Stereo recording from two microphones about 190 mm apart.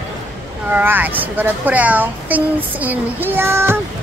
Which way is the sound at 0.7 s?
10° right (ahead or behind).